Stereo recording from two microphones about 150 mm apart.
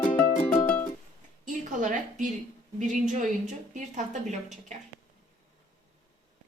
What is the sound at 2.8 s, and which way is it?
A woman's voice, 55° right (ahead or behind).